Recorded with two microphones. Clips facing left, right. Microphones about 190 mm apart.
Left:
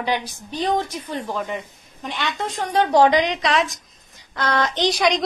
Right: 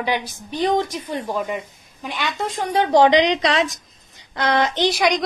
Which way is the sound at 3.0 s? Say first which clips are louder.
Right 3 dB; 20° right (ahead or behind).